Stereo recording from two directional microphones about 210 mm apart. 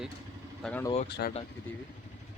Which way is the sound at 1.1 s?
50° left (ahead or behind).